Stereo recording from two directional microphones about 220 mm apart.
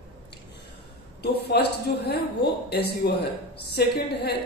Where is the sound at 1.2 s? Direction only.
50° left (ahead or behind).